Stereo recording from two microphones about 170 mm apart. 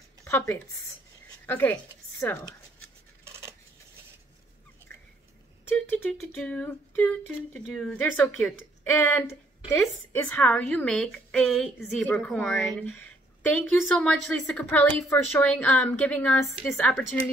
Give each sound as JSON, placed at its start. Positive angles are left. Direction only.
{"t": 0.2, "sound": "a woman's voice", "side_deg": 15}
{"t": 3.3, "sound": "coin", "side_deg": -15}
{"t": 5.7, "sound": "a woman's voice", "side_deg": 10}